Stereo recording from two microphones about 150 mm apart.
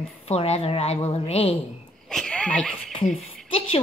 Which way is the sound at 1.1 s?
40° left (ahead or behind).